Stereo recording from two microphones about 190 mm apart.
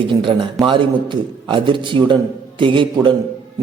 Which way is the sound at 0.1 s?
25° right (ahead or behind).